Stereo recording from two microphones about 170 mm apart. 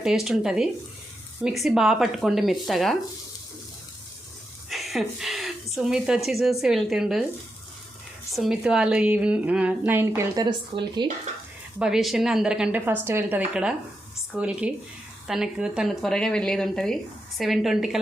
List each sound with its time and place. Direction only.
0.0 s speech: 5° right (ahead or behind)
4.7 s a sound: centre (ahead or behind)
5.7 s speech: 5° right (ahead or behind)
8.4 s a woman's voice: 5° right (ahead or behind)
10.2 s speech: 20° right (ahead or behind)
11.8 s a woman's voice: centre (ahead or behind)